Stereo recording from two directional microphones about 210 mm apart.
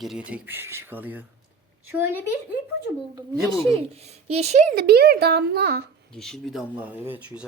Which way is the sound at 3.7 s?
30° right (ahead or behind).